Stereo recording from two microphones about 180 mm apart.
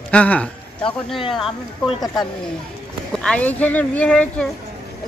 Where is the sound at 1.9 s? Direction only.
25° left (ahead or behind).